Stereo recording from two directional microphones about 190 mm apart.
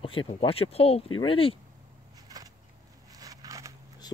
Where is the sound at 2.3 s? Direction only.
20° right (ahead or behind).